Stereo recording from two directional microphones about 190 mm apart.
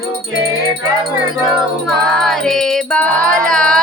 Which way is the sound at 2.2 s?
5° left (ahead or behind).